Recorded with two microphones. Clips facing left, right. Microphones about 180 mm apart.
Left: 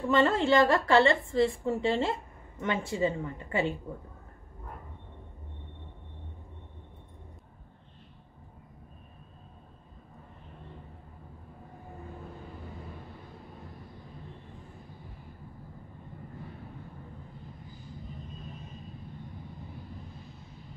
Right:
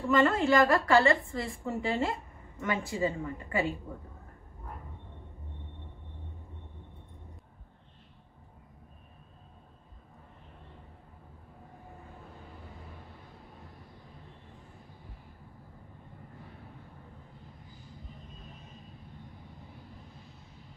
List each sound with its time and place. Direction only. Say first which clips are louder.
0.1 s a woman's voice: left 1 dB; 25° left (ahead or behind)